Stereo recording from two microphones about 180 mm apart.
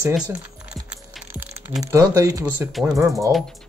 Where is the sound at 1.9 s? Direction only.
20° right (ahead or behind).